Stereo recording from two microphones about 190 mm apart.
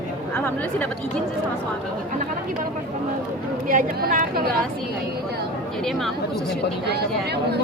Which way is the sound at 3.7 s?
45° right (ahead or behind).